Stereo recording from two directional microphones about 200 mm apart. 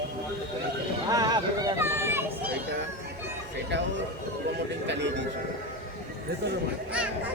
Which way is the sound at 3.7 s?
60° right (ahead or behind).